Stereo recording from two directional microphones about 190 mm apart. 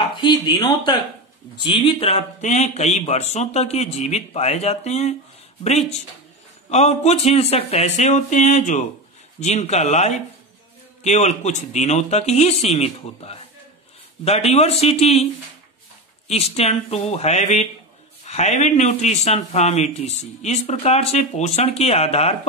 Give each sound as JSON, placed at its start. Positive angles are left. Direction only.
{"t": 0.0, "sound": "a man's voice", "side_deg": 25}
{"t": 16.3, "sound": "a man's voice", "side_deg": 35}